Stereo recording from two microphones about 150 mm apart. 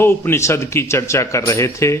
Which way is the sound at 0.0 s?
15° left (ahead or behind).